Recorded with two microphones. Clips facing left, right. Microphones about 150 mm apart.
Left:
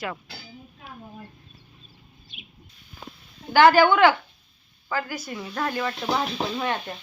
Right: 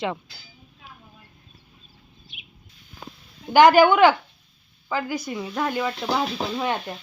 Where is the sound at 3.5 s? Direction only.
15° right (ahead or behind).